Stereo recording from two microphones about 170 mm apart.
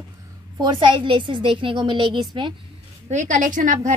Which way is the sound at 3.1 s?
45° right (ahead or behind).